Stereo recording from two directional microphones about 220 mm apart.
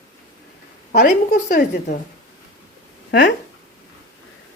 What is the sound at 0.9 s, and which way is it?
Speech, 45° left (ahead or behind).